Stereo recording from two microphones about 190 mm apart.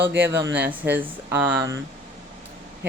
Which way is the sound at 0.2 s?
10° right (ahead or behind).